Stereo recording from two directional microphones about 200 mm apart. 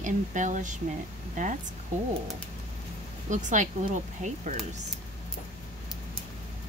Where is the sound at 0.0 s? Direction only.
40° right (ahead or behind).